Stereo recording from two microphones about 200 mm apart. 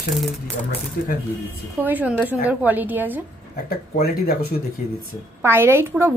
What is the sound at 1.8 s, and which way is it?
A woman's voice, 5° right (ahead or behind).